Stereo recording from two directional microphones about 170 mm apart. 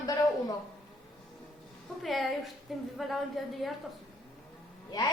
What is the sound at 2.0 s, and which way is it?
A woman's voice, centre (ahead or behind).